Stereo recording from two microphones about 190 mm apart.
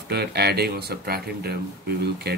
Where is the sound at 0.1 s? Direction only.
55° right (ahead or behind).